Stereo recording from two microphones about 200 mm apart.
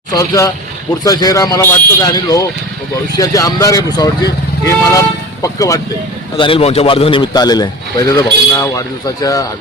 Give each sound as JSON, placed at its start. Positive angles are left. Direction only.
{"t": 0.1, "sound": "a man's voice", "side_deg": 15}